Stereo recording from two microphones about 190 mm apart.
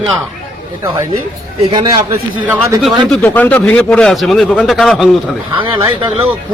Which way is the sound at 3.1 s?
10° left (ahead or behind).